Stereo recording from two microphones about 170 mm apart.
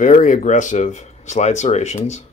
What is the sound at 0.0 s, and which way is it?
Speech, 50° left (ahead or behind).